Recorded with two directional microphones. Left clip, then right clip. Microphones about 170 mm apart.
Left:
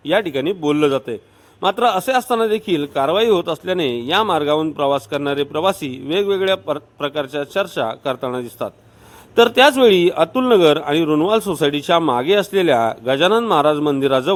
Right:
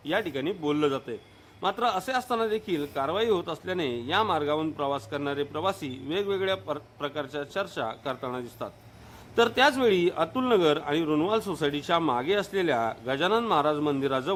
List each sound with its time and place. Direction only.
0.0 s a man's voice: 35° left (ahead or behind)